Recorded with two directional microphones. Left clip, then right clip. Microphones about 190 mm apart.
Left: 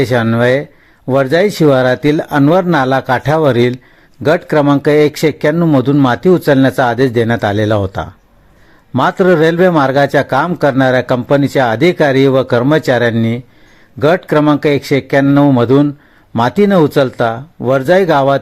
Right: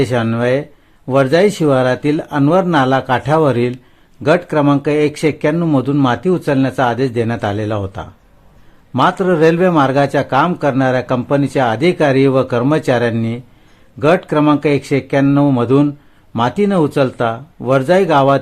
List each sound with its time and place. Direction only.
0.0 s a man's voice: 20° left (ahead or behind)